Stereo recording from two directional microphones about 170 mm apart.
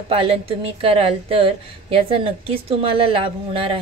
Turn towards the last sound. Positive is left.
turn(degrees=-35)  # may be behind; listen again after turning